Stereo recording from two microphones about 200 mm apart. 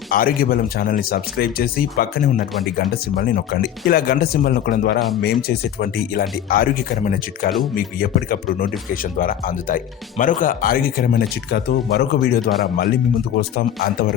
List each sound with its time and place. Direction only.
0.1 s speech: 45° left (ahead or behind)